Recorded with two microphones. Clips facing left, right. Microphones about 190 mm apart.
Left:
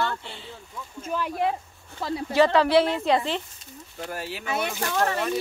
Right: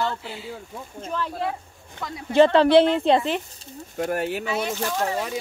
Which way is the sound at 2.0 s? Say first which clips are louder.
Left 5 dB; 30° left (ahead or behind).